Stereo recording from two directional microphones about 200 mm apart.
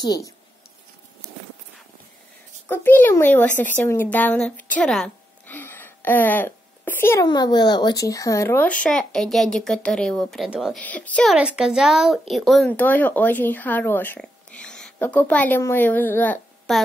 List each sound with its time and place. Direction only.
0.0 s speech: 20° left (ahead or behind)
2.7 s speech: 10° left (ahead or behind)
11.3 s speech: 5° right (ahead or behind)